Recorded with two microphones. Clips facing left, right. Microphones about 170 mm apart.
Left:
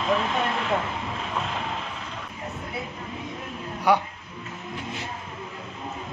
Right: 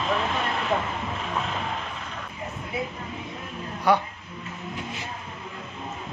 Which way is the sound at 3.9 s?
15° left (ahead or behind).